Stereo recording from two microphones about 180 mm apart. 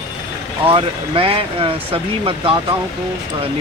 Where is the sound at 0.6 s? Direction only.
30° right (ahead or behind).